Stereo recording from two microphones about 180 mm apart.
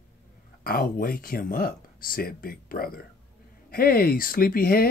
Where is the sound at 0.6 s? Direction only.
55° left (ahead or behind).